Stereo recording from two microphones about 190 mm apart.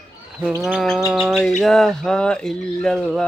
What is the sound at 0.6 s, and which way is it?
Bird, centre (ahead or behind).